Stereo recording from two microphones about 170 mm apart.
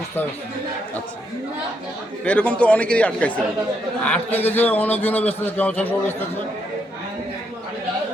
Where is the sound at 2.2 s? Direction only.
5° left (ahead or behind).